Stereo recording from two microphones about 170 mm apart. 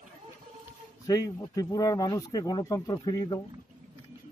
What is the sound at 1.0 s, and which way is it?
Speech, 20° left (ahead or behind).